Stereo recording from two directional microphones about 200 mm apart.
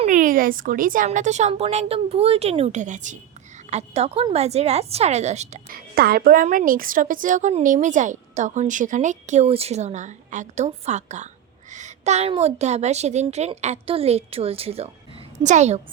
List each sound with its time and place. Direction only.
0.0 s a woman's voice: 40° right (ahead or behind)
5.9 s a woman's voice: 50° right (ahead or behind); by 15.8 s 35° right (ahead or behind)